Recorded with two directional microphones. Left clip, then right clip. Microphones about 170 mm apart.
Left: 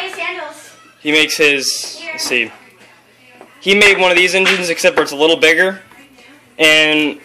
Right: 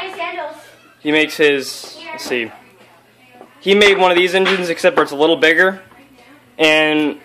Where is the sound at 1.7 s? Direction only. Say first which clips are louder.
Left 7 dB; 30° right (ahead or behind).